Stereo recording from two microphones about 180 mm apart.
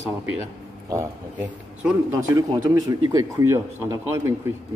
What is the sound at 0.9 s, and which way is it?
Speech, 15° right (ahead or behind).